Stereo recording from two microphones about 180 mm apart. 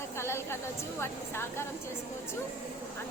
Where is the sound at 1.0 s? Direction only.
15° left (ahead or behind).